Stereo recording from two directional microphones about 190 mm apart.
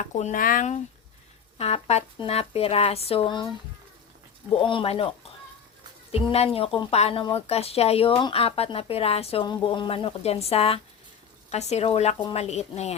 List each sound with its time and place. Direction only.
0.0 s speech: 40° left (ahead or behind)
4.6 s speech: 25° left (ahead or behind)